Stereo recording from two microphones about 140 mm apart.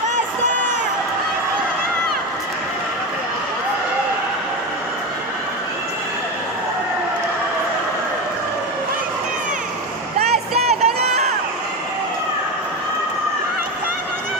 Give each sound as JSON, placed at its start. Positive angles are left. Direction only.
{"t": 10.2, "sound": "crowd", "side_deg": -50}